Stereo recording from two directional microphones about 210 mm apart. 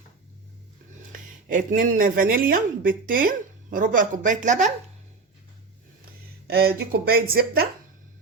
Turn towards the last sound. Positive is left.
turn(degrees=-45)  # may be behind; listen again after turning